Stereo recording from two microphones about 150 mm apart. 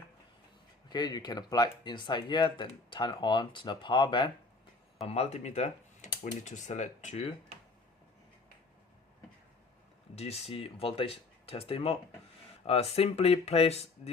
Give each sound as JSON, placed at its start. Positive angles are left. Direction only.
{"t": 0.9, "sound": "speech", "side_deg": 30}
{"t": 5.0, "sound": "speech", "side_deg": 45}
{"t": 10.2, "sound": "speech", "side_deg": 45}